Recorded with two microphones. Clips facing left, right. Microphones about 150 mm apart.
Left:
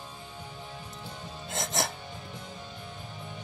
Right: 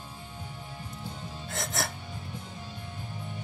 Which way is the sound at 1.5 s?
20° left (ahead or behind).